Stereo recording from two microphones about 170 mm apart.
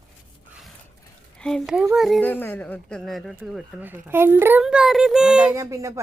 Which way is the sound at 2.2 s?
10° left (ahead or behind).